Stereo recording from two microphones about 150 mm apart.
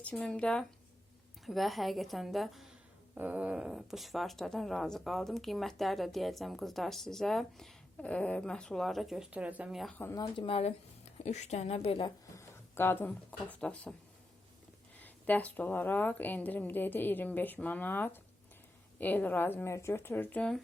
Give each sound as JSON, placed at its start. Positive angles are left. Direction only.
{"t": 0.0, "sound": "a woman's voice", "side_deg": 5}
{"t": 10.0, "sound": "a woman's voice", "side_deg": 20}
{"t": 10.3, "sound": "a woman's voice", "side_deg": 40}
{"t": 12.4, "sound": "speech", "side_deg": 15}
{"t": 14.9, "sound": "a woman's voice", "side_deg": 10}